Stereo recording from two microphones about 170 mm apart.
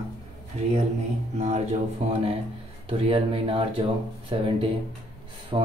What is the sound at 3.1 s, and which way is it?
Speech, 30° right (ahead or behind).